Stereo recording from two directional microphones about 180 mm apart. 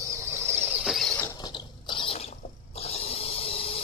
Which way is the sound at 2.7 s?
35° left (ahead or behind).